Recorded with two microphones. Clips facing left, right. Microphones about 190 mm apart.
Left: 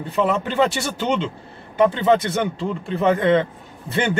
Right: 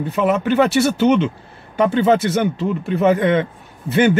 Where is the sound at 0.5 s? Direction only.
25° left (ahead or behind).